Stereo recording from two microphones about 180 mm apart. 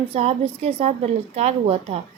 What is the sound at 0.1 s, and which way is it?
Speech, 30° right (ahead or behind).